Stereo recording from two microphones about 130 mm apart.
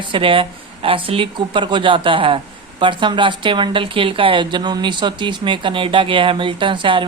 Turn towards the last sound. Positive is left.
turn(degrees=-40)  # may be behind; listen again after turning